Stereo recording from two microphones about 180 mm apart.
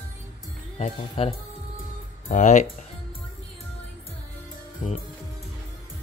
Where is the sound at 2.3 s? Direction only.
40° left (ahead or behind).